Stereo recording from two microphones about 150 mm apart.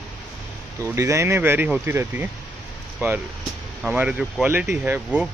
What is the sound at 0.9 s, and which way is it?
Speech, 20° right (ahead or behind).